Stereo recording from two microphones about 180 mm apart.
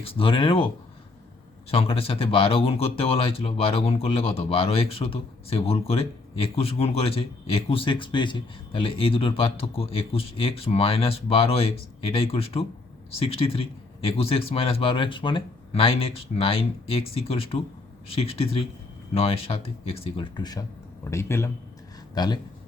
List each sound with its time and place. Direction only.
0.0 s speech: 30° left (ahead or behind)
1.7 s speech: 30° left (ahead or behind)